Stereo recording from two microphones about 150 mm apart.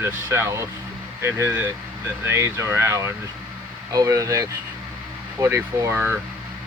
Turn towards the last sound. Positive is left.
turn(degrees=-15)  # may be behind; listen again after turning